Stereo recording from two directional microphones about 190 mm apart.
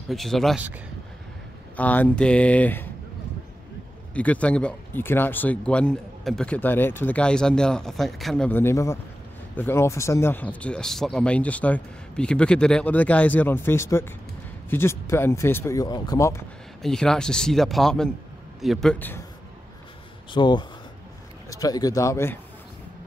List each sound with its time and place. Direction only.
0.1 s speech: centre (ahead or behind)
1.8 s speech: 10° left (ahead or behind)
4.1 s speech: 5° left (ahead or behind)
16.8 s speech: 5° left (ahead or behind)
20.3 s speech: 25° left (ahead or behind)